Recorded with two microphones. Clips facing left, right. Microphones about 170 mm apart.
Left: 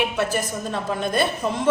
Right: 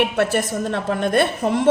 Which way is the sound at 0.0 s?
65° right (ahead or behind).